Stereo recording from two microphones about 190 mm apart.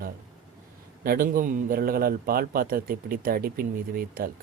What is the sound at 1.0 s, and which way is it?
A man's voice, 50° right (ahead or behind).